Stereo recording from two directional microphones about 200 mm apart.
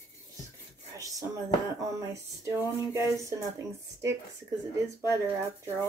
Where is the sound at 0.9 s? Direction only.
15° right (ahead or behind).